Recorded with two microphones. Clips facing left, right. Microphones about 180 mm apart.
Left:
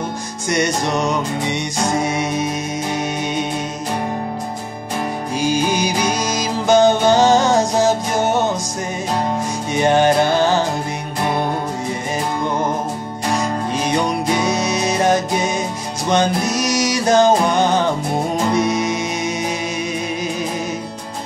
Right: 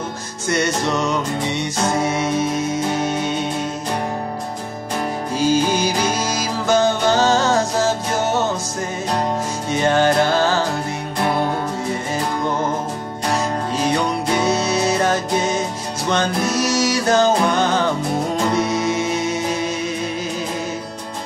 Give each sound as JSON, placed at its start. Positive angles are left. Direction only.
{"t": 0.5, "sound": "music", "side_deg": 15}
{"t": 5.4, "sound": "music", "side_deg": 15}
{"t": 9.7, "sound": "music", "side_deg": 15}
{"t": 13.8, "sound": "music", "side_deg": 15}